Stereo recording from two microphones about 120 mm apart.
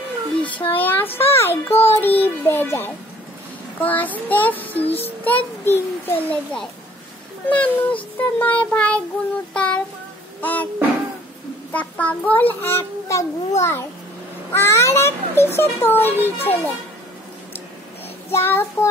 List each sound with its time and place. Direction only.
0.7 s a child's voice: 15° left (ahead or behind)
2.0 s music: 15° left (ahead or behind)
3.8 s a child's voice: 15° left (ahead or behind)
9.5 s child singing: 10° left (ahead or behind)
10.4 s a child's voice: 15° left (ahead or behind)
11.7 s a child's voice: 10° left (ahead or behind)
18.3 s a child's voice: 20° left (ahead or behind)